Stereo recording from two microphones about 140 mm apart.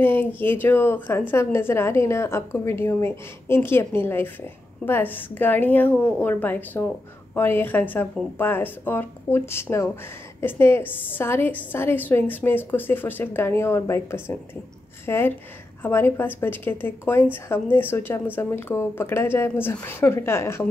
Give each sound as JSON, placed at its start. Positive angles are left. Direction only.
{"t": 0.0, "sound": "a woman's voice", "side_deg": 15}